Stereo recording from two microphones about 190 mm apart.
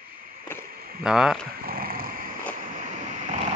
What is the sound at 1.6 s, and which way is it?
Dog, 50° right (ahead or behind).